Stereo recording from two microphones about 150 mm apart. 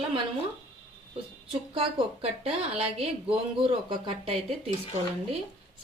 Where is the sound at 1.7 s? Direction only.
40° right (ahead or behind).